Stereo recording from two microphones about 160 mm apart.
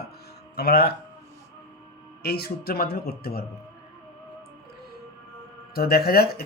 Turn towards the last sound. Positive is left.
turn(degrees=70)  # may be behind; listen again after turning